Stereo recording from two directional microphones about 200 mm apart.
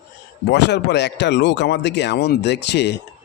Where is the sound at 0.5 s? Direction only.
60° left (ahead or behind).